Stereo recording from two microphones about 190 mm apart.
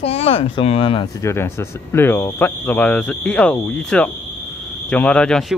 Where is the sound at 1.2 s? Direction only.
15° left (ahead or behind).